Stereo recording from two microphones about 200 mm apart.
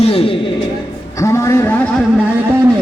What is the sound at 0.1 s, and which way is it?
Music, 25° left (ahead or behind).